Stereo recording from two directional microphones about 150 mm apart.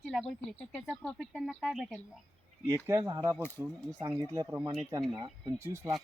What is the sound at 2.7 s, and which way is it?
Speech, 20° right (ahead or behind).